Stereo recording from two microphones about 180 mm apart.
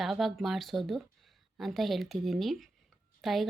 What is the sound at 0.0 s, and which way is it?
Speech, centre (ahead or behind).